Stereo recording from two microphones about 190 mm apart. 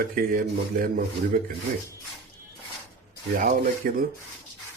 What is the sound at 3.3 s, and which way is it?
Speech, 45° right (ahead or behind).